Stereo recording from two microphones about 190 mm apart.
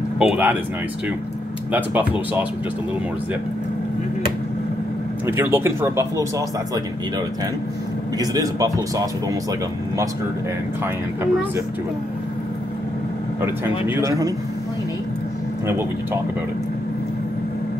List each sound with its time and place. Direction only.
0.2 s speech: 5° right (ahead or behind)
1.7 s speech: 10° right (ahead or behind)
5.2 s speech: 10° right (ahead or behind)
8.2 s speech: 20° right (ahead or behind)
13.4 s speech: 10° right (ahead or behind)
15.6 s speech: 15° right (ahead or behind)